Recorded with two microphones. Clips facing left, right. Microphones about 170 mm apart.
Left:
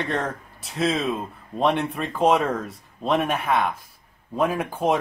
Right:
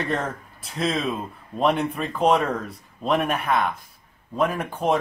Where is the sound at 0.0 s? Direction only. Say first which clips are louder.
Even; centre (ahead or behind).